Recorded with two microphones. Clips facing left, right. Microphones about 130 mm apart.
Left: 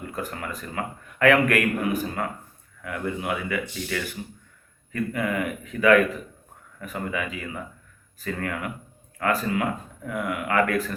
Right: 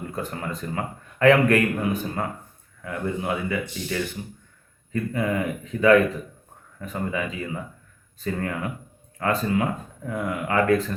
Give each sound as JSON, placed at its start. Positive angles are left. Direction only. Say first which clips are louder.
{"t": 0.2, "sound": "speech", "louder": "right 2 dB", "side_deg": -25}